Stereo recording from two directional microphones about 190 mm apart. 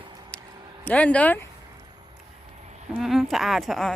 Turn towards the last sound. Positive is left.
turn(degrees=0)  # may be behind; listen again after turning